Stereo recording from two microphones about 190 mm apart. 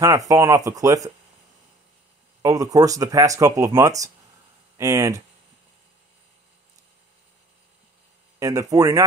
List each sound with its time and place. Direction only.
0.0 s speech: 20° right (ahead or behind)
2.4 s speech: 20° right (ahead or behind)
8.4 s speech: 20° right (ahead or behind)